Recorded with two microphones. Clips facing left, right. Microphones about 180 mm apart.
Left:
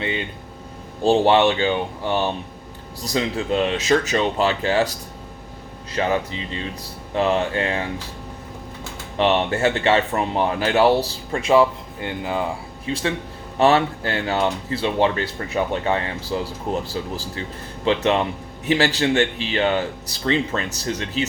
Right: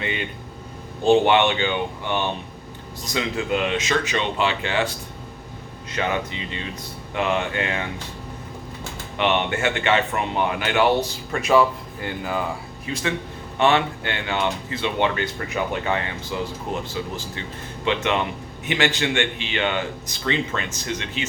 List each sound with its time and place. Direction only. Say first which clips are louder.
1.0 s speech: left 1 dB; 35° left (ahead or behind)
9.1 s speech: left 3 dB; 35° left (ahead or behind)